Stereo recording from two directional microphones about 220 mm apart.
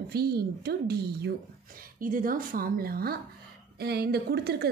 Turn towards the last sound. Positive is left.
turn(degrees=-45)  # may be behind; listen again after turning